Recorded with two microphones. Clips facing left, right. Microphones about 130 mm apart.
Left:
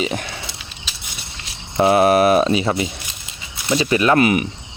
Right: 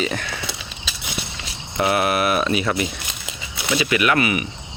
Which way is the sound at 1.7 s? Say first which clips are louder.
Left 6 dB; 30° left (ahead or behind).